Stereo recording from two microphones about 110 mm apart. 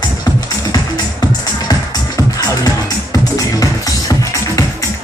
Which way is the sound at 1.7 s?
35° left (ahead or behind).